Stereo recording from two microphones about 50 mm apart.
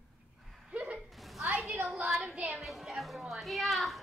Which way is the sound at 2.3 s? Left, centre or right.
Right.